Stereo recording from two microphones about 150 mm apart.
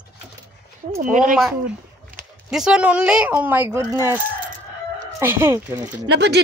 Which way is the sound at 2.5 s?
5° right (ahead or behind).